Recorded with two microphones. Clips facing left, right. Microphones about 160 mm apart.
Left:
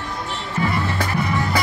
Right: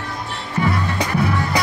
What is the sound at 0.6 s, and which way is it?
Music, 20° right (ahead or behind).